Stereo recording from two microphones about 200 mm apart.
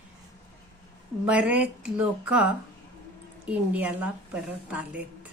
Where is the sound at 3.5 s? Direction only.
5° right (ahead or behind).